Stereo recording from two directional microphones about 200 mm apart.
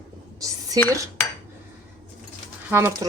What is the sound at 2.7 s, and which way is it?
Speech, 10° right (ahead or behind).